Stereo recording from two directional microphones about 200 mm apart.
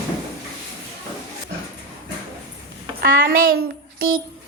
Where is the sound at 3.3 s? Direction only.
45° right (ahead or behind).